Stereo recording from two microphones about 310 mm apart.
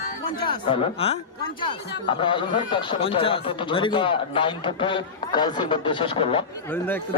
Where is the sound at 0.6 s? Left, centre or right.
Centre.